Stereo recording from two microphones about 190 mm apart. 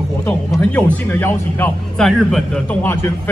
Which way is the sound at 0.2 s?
10° left (ahead or behind).